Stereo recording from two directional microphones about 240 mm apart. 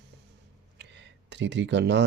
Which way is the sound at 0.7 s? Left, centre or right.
Right.